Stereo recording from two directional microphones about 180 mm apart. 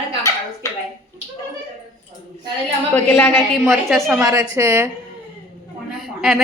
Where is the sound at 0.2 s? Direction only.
20° left (ahead or behind).